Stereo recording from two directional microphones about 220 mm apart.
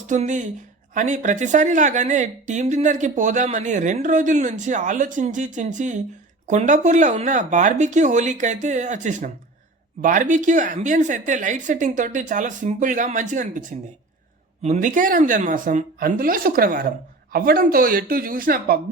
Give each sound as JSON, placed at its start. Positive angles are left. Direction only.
{"t": 0.1, "sound": "speech", "side_deg": -35}